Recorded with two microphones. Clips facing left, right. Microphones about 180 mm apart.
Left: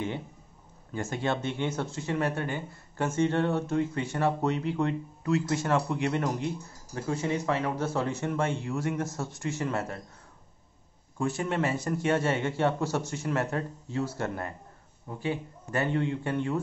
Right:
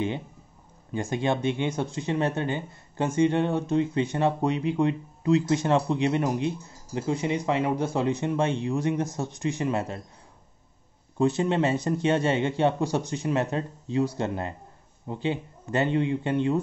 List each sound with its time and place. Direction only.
0.9 s speech: 15° right (ahead or behind)
11.1 s speech: 20° right (ahead or behind)